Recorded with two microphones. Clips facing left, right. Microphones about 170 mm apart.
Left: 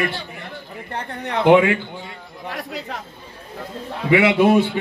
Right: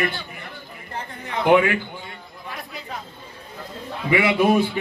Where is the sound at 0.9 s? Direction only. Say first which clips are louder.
Left 4 dB; 70° left (ahead or behind).